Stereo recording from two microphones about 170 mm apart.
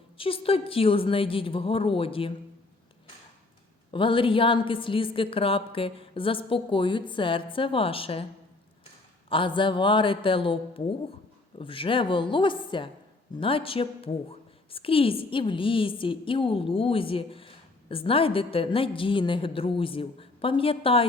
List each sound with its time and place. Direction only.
0.2 s a woman's voice: 35° left (ahead or behind)
3.9 s a woman's voice: 30° left (ahead or behind)
9.3 s a woman's voice: 30° left (ahead or behind)